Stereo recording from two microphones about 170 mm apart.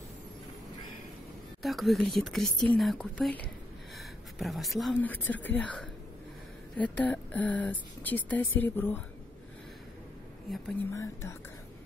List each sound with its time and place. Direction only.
1.6 s speech: centre (ahead or behind)
10.9 s speech: 15° left (ahead or behind)